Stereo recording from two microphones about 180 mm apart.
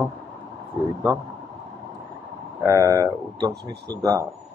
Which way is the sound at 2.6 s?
15° right (ahead or behind).